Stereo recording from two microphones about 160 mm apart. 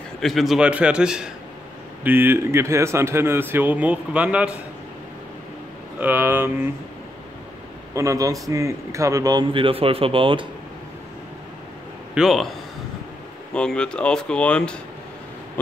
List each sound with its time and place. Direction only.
0.2 s speech: centre (ahead or behind)
5.9 s speech: 10° right (ahead or behind)
7.9 s a man's voice: 20° right (ahead or behind)
12.1 s a man's voice: centre (ahead or behind)